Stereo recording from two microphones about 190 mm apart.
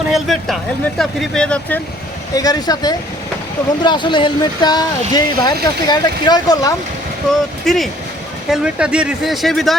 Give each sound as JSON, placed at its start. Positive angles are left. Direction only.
{"t": 0.1, "sound": "speech", "side_deg": 0}
{"t": 2.3, "sound": "speech", "side_deg": 20}
{"t": 7.3, "sound": "speech", "side_deg": 0}